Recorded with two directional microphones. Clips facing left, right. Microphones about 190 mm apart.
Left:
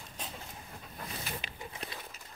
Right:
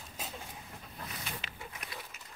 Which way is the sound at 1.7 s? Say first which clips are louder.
Left 3 dB; 30° left (ahead or behind).